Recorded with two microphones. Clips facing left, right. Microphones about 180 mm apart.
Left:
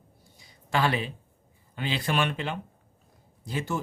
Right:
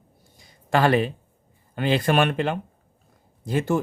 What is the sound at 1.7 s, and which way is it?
Speech, 55° right (ahead or behind).